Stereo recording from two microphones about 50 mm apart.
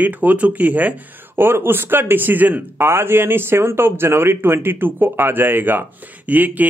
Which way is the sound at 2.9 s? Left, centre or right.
Right.